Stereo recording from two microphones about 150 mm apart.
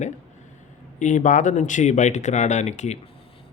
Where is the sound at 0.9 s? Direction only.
55° left (ahead or behind).